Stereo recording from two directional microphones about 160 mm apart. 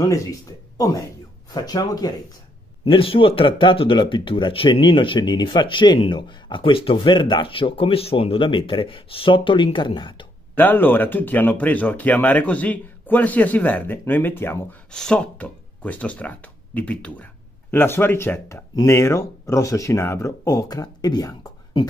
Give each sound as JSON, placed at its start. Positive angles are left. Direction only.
{"t": 0.0, "sound": "speech", "side_deg": 20}
{"t": 2.8, "sound": "speech", "side_deg": 35}
{"t": 10.5, "sound": "speech", "side_deg": 10}